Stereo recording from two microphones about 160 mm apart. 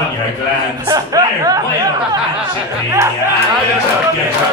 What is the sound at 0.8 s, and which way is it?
Speech, 20° right (ahead or behind).